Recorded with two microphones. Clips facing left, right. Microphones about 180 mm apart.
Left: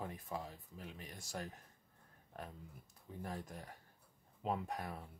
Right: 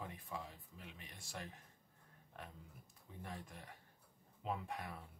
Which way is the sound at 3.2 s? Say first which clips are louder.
Left 5 dB; 40° left (ahead or behind).